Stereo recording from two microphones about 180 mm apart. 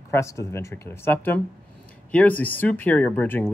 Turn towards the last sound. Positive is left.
turn(degrees=10)  # may be behind; listen again after turning